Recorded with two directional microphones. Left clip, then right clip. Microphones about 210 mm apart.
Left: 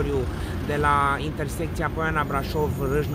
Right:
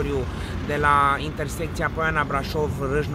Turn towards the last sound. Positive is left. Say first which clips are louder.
# right 1 dB
turn(degrees=0)  # may be behind; listen again after turning